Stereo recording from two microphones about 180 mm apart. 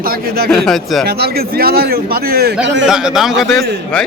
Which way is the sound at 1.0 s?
60° right (ahead or behind).